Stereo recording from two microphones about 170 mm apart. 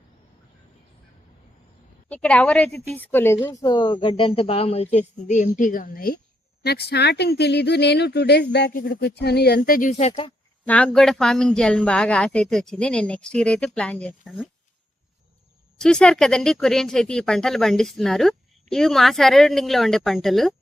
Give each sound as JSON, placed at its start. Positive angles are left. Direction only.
{"t": 2.0, "sound": "a woman's voice", "side_deg": 10}
{"t": 6.7, "sound": "speech", "side_deg": 70}
{"t": 8.7, "sound": "speech", "side_deg": 55}
{"t": 10.0, "sound": "speech", "side_deg": 35}
{"t": 10.7, "sound": "speech", "side_deg": 5}
{"t": 15.8, "sound": "speech", "side_deg": 5}